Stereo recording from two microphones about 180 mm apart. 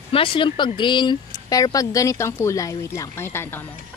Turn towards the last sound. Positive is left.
turn(degrees=15)  # may be behind; listen again after turning